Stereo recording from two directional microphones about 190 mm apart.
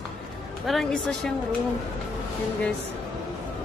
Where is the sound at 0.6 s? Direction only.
Centre (ahead or behind).